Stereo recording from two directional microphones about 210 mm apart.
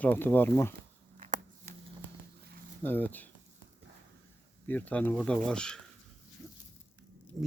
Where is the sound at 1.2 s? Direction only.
40° right (ahead or behind).